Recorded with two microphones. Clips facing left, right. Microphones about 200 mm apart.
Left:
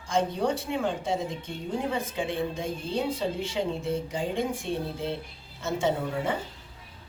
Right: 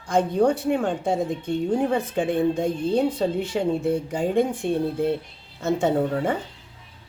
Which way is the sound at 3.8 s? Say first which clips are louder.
Right 6 dB; 55° right (ahead or behind).